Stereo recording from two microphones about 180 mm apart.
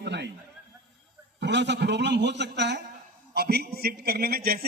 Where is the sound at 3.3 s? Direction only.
60° right (ahead or behind).